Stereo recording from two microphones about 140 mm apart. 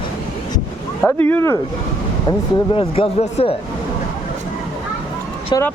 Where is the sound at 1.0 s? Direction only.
15° left (ahead or behind).